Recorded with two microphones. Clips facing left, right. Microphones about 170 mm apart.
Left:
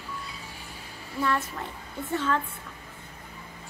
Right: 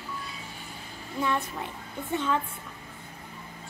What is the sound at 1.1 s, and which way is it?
Speech, 15° right (ahead or behind).